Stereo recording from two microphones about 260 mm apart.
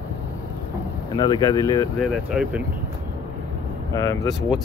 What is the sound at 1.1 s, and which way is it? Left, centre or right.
Speech, centre.